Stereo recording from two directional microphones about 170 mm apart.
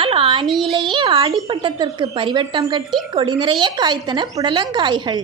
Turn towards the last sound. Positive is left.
turn(degrees=-25)  # may be behind; listen again after turning